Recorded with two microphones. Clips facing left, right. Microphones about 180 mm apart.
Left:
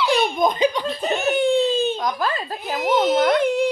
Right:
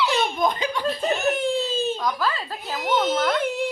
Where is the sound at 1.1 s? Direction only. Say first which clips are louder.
Left 7 dB; centre (ahead or behind).